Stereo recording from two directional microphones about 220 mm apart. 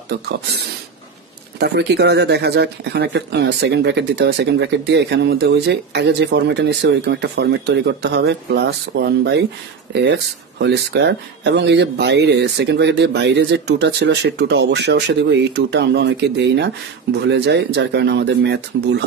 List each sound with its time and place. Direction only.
0.1 s speech: 50° right (ahead or behind)
1.6 s speech: 50° right (ahead or behind)